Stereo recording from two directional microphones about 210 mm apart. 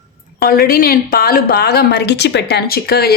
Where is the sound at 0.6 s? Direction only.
45° left (ahead or behind).